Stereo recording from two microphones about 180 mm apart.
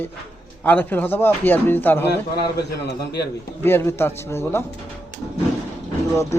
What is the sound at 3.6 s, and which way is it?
A man's voice, 10° left (ahead or behind).